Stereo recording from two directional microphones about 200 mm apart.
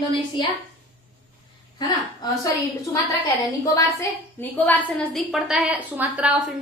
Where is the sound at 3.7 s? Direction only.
15° left (ahead or behind).